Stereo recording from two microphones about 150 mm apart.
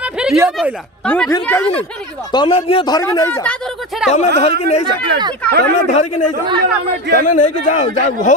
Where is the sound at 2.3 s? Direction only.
35° left (ahead or behind).